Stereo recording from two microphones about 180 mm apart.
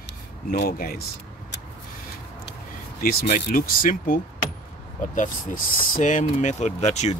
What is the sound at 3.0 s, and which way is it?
Speech, 55° left (ahead or behind).